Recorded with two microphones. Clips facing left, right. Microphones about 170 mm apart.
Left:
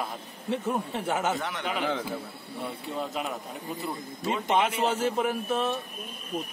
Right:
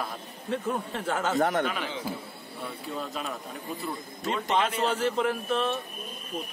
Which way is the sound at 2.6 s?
15° left (ahead or behind).